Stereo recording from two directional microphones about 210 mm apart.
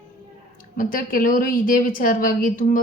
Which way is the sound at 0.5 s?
40° left (ahead or behind).